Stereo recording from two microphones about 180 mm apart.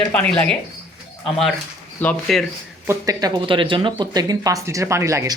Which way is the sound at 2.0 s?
5° left (ahead or behind).